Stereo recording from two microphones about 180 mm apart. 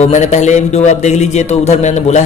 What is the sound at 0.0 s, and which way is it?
A man's voice, 40° left (ahead or behind).